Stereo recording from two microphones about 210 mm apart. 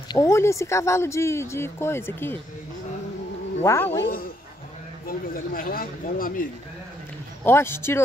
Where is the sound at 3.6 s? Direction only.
10° left (ahead or behind).